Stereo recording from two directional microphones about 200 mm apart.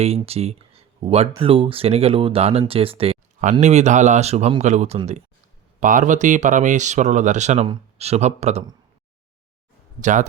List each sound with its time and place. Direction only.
0.0 s speech: 30° right (ahead or behind)
10.0 s speech: 40° right (ahead or behind)